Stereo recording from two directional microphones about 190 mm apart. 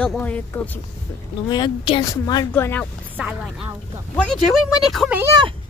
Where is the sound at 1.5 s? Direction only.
25° left (ahead or behind).